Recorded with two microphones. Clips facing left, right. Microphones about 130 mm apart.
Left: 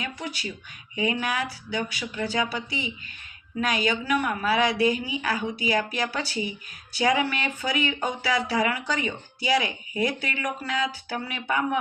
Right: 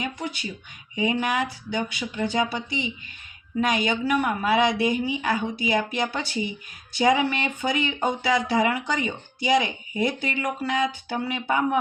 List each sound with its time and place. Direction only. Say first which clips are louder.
0.0 s speech: right 3 dB; 20° right (ahead or behind)